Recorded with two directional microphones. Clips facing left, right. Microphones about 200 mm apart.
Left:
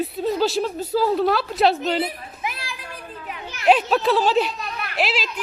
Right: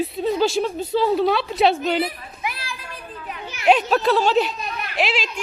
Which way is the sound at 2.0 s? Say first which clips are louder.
Right 1 dB; 25° left (ahead or behind).